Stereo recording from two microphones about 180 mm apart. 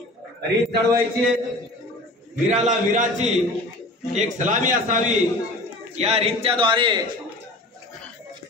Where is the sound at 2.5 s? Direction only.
40° right (ahead or behind).